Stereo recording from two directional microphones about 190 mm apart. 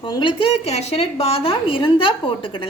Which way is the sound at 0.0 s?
25° left (ahead or behind).